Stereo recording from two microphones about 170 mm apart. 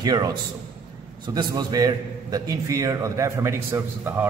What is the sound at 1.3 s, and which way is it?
A man's voice, 25° right (ahead or behind).